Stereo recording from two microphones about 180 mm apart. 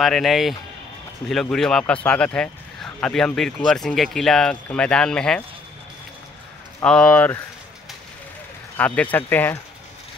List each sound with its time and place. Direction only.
0.0 s speech: centre (ahead or behind)
6.8 s speech: 5° left (ahead or behind)
8.7 s speech: 10° left (ahead or behind)